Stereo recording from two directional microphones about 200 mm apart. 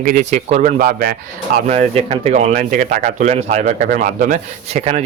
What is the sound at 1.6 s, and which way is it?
Speech, 30° right (ahead or behind).